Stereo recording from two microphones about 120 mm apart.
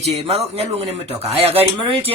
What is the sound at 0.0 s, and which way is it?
Speech, 60° right (ahead or behind).